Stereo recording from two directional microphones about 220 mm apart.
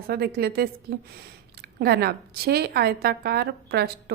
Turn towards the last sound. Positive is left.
turn(degrees=-45)  # may be behind; listen again after turning